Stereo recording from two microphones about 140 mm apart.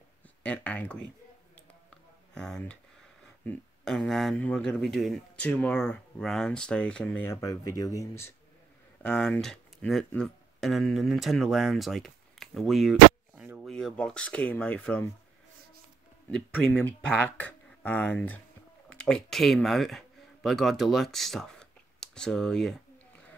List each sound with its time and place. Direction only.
0.4 s speech: 10° left (ahead or behind)
2.3 s speech: 5° left (ahead or behind)
7.3 s speech: 25° left (ahead or behind)
9.0 s speech: 5° left (ahead or behind)
16.3 s speech: 5° left (ahead or behind)